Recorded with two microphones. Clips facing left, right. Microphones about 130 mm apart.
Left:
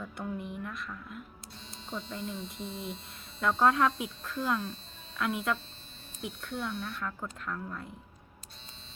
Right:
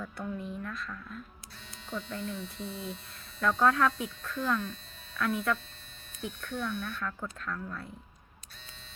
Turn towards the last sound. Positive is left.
turn(degrees=15)  # may be behind; listen again after turning